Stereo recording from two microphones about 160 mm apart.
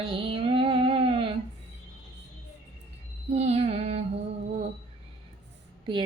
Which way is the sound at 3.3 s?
45° right (ahead or behind).